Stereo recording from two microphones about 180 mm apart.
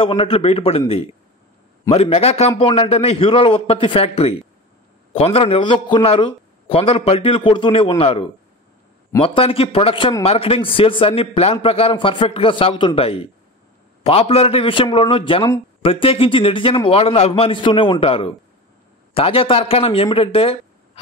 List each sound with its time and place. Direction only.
0.0 s a man's voice: 30° left (ahead or behind)